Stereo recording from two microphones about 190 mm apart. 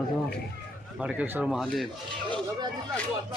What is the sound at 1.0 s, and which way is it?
Speech, 5° right (ahead or behind).